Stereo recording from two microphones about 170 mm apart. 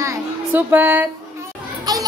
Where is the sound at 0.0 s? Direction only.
15° right (ahead or behind).